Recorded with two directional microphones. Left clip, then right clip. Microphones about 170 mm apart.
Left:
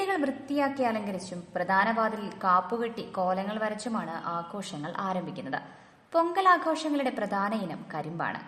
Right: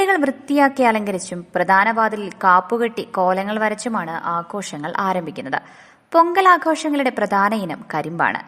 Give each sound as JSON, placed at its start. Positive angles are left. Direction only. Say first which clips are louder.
{"t": 0.0, "sound": "a woman's voice", "louder": "right 12 dB", "side_deg": -45}